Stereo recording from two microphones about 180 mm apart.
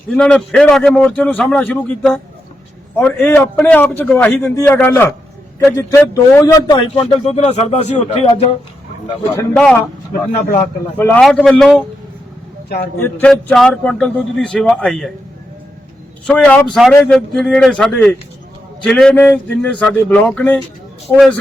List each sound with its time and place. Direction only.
0.1 s a man's voice: 5° left (ahead or behind)
6.7 s a man's voice: 30° left (ahead or behind)
9.0 s a man's voice: 20° left (ahead or behind)
10.1 s speech: 45° left (ahead or behind)
10.9 s a man's voice: 10° left (ahead or behind)
12.6 s speech: 60° left (ahead or behind)
13.0 s a man's voice: 10° left (ahead or behind)
16.2 s a man's voice: 5° left (ahead or behind)